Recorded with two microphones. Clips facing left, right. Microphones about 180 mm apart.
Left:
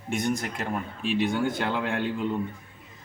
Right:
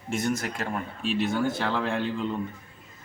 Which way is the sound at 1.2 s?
15° left (ahead or behind).